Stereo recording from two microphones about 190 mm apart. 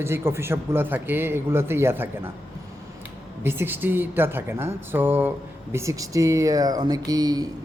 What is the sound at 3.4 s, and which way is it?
Speech, 10° right (ahead or behind).